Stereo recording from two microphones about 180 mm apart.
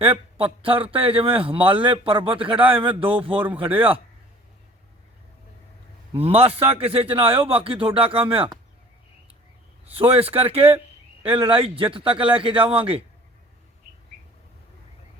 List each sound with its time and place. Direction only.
0.0 s speech: 30° right (ahead or behind)
3.3 s speech: 10° right (ahead or behind)
6.1 s a man's voice: 30° right (ahead or behind)
9.9 s a man's voice: 30° right (ahead or behind)